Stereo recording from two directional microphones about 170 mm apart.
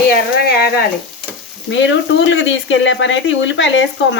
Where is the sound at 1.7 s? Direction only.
90° left.